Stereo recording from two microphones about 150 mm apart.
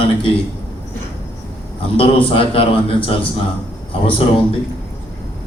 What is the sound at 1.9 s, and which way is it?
A man's voice, 40° left (ahead or behind).